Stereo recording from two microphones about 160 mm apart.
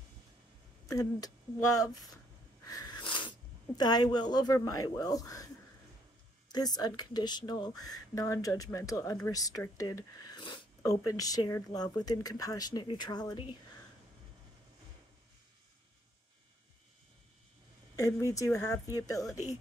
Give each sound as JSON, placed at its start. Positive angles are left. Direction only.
{"t": 0.8, "sound": "speech", "side_deg": 25}
{"t": 2.6, "sound": "speech", "side_deg": 25}
{"t": 6.5, "sound": "speech", "side_deg": 25}
{"t": 17.9, "sound": "speech", "side_deg": 20}